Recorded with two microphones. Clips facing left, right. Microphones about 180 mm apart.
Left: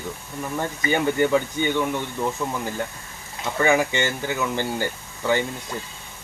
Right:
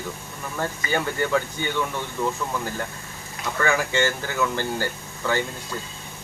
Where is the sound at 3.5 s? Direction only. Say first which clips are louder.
Left 3 dB; 20° left (ahead or behind).